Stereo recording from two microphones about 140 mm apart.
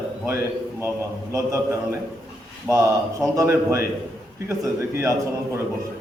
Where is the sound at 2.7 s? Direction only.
25° right (ahead or behind).